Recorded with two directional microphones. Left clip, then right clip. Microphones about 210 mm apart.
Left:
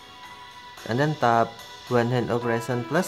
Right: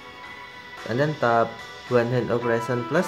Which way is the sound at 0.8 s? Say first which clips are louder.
Even; 20° left (ahead or behind).